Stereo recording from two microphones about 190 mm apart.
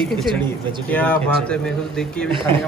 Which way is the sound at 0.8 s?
10° left (ahead or behind).